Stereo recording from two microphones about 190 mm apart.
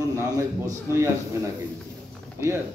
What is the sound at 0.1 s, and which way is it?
Speech, 15° right (ahead or behind).